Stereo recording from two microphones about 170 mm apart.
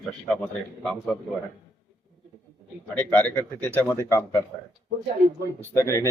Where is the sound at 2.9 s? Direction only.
10° left (ahead or behind).